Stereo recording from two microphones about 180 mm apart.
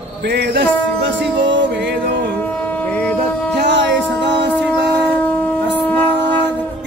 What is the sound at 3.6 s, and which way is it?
Music, 80° right.